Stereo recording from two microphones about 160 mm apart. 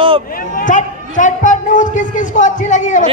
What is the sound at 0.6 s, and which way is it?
A woman's voice, 50° left (ahead or behind).